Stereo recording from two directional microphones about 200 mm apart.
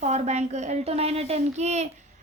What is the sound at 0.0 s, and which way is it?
A woman's voice, 35° right (ahead or behind).